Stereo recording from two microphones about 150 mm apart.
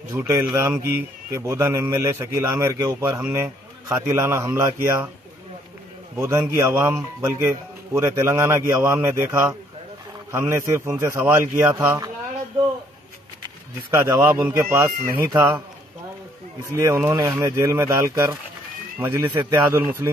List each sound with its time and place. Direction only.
0.1 s a man's voice: 15° right (ahead or behind)
6.1 s a man's voice: 20° right (ahead or behind)
13.4 s a sound: 20° right (ahead or behind)
14.3 s speech: 15° right (ahead or behind)
16.7 s speech: 20° right (ahead or behind)